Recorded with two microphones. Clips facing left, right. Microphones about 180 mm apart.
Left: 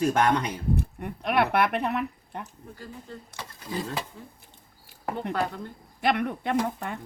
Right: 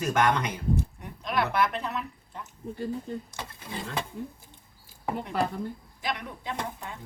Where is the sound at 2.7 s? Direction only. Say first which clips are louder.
Right 10 dB; 20° right (ahead or behind).